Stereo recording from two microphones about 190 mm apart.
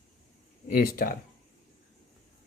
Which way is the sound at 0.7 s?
50° left (ahead or behind).